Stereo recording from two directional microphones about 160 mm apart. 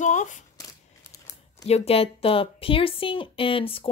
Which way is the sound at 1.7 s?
40° left (ahead or behind).